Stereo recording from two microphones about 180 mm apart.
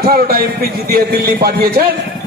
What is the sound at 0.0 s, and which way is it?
A man's voice, 55° right (ahead or behind).